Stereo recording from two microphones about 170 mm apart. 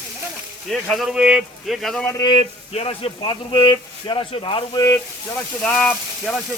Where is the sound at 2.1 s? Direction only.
25° left (ahead or behind).